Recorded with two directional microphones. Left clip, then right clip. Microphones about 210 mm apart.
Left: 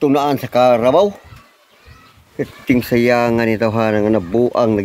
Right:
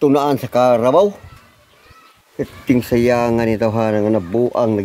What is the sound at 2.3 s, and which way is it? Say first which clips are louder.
Speech: left 1 dB; 20° right (ahead or behind).